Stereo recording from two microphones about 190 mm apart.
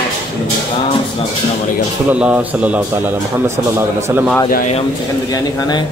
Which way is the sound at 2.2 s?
5° right (ahead or behind).